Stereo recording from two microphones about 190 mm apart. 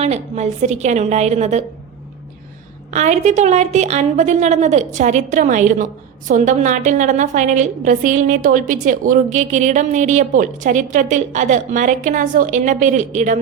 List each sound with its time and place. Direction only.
0.0 s a woman's voice: 35° right (ahead or behind)
2.9 s a woman's voice: 40° right (ahead or behind)